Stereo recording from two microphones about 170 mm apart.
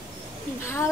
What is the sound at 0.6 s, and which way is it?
Speech, 15° left (ahead or behind).